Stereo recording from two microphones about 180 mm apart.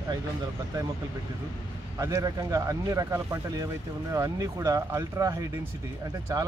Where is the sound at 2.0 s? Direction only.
15° right (ahead or behind).